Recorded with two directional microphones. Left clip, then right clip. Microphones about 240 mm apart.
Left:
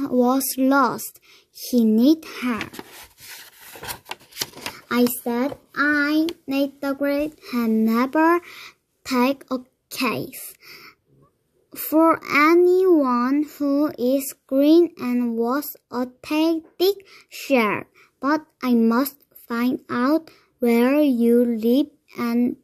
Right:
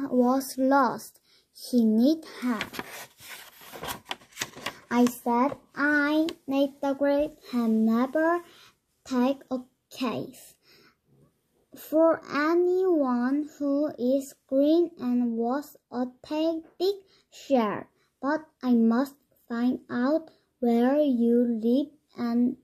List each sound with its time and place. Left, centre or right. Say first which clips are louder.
0.4 s speech: left 4 dB; left
4.4 s a sound: left 7 dB; left
5.2 s a child's voice: even; left